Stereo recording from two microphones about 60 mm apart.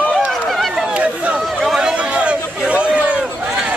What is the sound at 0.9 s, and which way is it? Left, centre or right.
Chatter, right.